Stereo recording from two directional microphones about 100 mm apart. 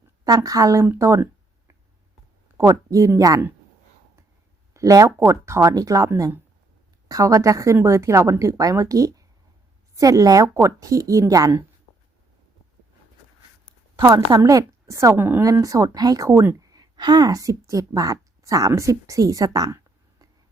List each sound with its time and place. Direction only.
0.3 s speech: 40° right (ahead or behind)
4.7 s speech: 35° right (ahead or behind)
14.3 s speech: 35° right (ahead or behind)
15.4 s speech: 35° right (ahead or behind)
16.6 s a woman's voice: 40° right (ahead or behind)